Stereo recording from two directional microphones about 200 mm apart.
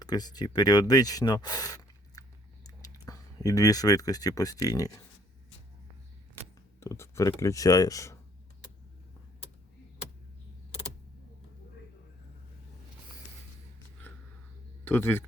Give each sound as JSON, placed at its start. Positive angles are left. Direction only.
{"t": 0.0, "sound": "speech", "side_deg": 20}
{"t": 6.3, "sound": "speech", "side_deg": 15}
{"t": 14.8, "sound": "speech", "side_deg": 10}